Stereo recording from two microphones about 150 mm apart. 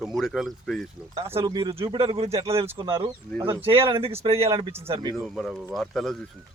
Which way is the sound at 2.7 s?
35° right (ahead or behind).